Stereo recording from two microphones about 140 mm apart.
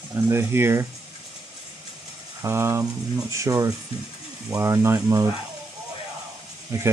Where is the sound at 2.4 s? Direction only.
20° right (ahead or behind).